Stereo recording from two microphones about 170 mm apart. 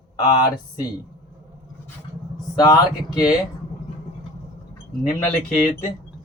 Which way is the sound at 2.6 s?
25° left (ahead or behind).